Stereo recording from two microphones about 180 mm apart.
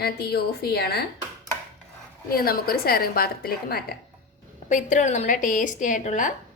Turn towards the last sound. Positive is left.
turn(degrees=45)  # may be behind; listen again after turning